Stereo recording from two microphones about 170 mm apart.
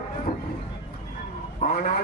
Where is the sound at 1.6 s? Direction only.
55° left (ahead or behind).